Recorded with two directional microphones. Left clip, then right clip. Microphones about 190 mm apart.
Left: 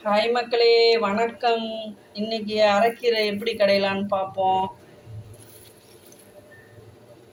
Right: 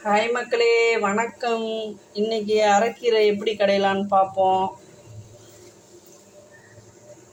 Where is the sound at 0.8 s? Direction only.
10° right (ahead or behind).